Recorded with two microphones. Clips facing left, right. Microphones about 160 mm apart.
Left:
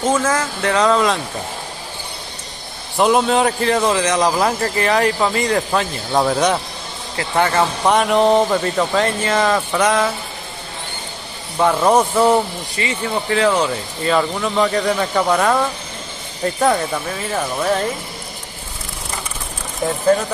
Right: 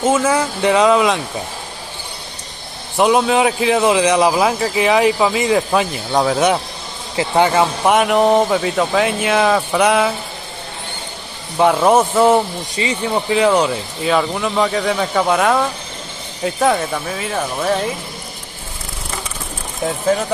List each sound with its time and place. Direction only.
0.0 s speech: 10° right (ahead or behind)
3.0 s speech: centre (ahead or behind)
7.2 s speech: 15° right (ahead or behind)
11.5 s speech: 10° right (ahead or behind)
12.7 s speech: 20° right (ahead or behind)
14.0 s speech: 5° right (ahead or behind)